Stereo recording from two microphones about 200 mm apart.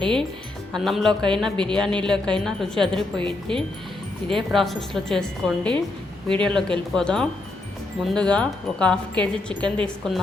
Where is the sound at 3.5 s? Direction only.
25° right (ahead or behind).